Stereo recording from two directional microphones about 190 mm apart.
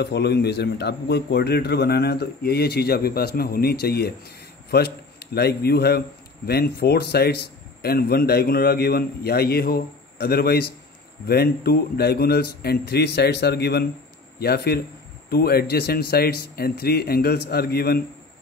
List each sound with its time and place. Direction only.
0.0 s a man's voice: 60° left (ahead or behind)